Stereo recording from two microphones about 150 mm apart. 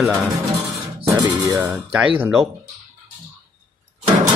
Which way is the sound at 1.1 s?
25° right (ahead or behind).